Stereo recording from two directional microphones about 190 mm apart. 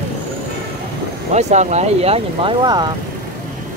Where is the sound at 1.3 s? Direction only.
35° right (ahead or behind).